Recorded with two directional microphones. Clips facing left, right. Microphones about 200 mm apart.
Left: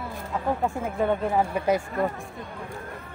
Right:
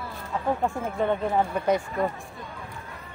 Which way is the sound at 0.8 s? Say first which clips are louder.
Left 2 dB; 5° left (ahead or behind).